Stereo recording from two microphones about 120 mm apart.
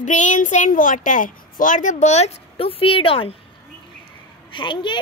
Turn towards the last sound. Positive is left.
turn(degrees=45)  # may be behind; listen again after turning